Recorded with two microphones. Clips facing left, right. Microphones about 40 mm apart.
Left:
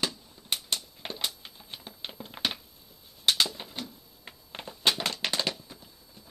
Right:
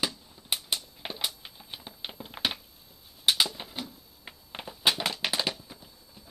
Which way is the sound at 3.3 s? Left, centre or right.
Centre.